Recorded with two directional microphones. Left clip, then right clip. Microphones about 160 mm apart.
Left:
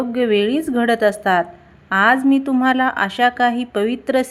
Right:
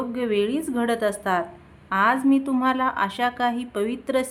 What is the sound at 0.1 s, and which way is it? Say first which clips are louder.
Speech: left 7 dB; 25° left (ahead or behind).